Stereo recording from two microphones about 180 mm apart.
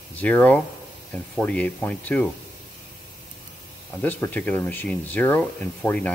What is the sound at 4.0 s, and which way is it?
Speech, 10° left (ahead or behind).